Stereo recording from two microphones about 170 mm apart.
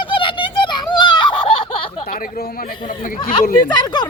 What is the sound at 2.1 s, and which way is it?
Speech, 60° left (ahead or behind).